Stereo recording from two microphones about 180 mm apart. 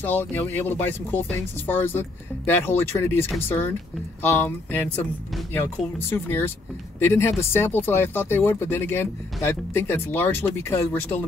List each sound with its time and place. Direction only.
0.0 s speech: 10° left (ahead or behind)